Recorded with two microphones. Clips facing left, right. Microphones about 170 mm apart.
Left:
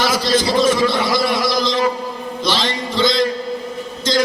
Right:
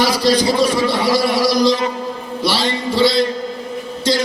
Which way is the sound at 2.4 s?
10° right (ahead or behind).